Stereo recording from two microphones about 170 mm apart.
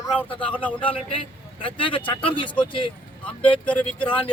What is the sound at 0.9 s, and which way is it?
A man's voice, 35° left (ahead or behind).